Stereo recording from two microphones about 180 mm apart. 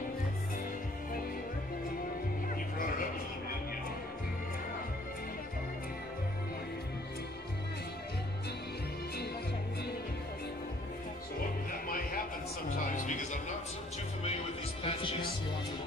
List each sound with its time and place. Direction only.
12.9 s music: 45° left (ahead or behind)
14.8 s music: 30° left (ahead or behind)